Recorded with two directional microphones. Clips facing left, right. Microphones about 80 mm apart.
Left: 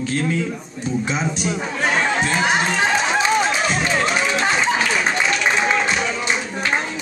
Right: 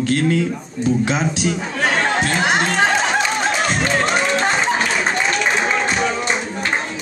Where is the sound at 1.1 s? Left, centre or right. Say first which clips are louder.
Right 3 dB; right.